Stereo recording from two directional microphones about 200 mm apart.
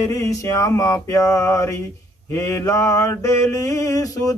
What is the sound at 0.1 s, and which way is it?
Mantra, 15° left (ahead or behind).